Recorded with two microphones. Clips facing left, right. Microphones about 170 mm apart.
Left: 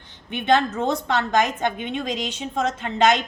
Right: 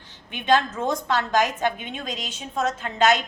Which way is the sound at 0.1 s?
65° left (ahead or behind).